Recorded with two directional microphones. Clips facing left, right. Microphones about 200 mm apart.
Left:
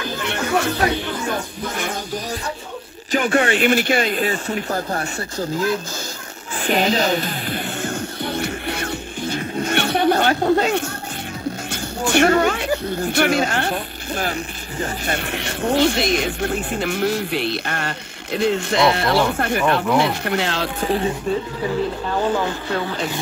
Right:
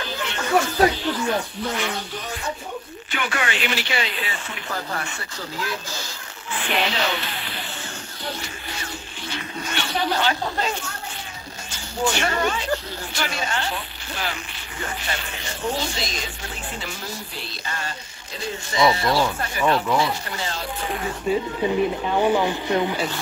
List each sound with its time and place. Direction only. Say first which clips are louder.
0.9 s speech: even; 50° left (ahead or behind)
3.1 s speech: left 9 dB; 35° left (ahead or behind)
3.5 s speech: left 9 dB; 50° left (ahead or behind)
6.6 s music: left 6 dB; 40° left (ahead or behind); by 10.8 s 60° left (ahead or behind)
12.1 s speech: left 10 dB; 60° left (ahead or behind)
15.0 s speech: left 7 dB; 65° left (ahead or behind)
20.8 s speech: left 9 dB; 30° left (ahead or behind)
21.6 s speech: right 1 dB; 15° right (ahead or behind)